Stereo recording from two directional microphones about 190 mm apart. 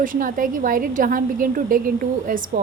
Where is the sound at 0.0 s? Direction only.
45° right (ahead or behind).